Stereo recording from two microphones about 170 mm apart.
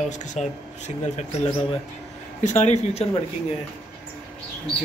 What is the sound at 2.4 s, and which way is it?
Speech, 45° left (ahead or behind).